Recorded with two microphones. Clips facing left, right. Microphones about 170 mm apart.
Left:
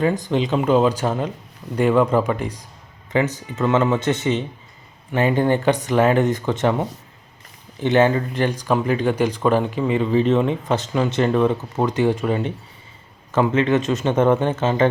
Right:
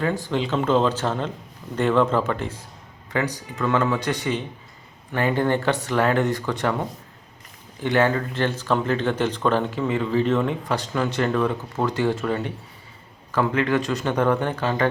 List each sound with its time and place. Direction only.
0.0 s speech: 20° left (ahead or behind)